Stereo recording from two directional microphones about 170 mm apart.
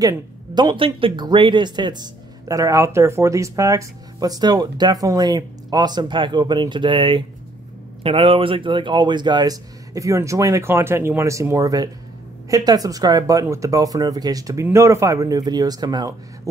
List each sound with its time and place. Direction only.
0.0 s speech: 20° right (ahead or behind)